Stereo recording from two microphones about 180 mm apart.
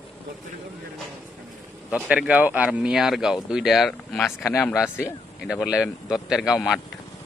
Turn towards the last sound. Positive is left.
turn(degrees=0)  # may be behind; listen again after turning